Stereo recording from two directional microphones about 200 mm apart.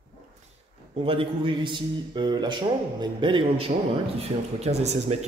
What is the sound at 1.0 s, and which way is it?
Speech, 25° right (ahead or behind).